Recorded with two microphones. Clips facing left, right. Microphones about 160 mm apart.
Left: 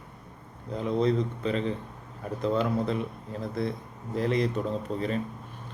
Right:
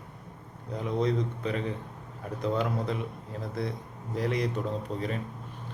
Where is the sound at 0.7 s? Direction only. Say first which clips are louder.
Left 3 dB; 15° right (ahead or behind).